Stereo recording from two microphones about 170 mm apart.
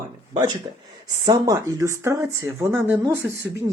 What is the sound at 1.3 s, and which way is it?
Speech, 20° right (ahead or behind).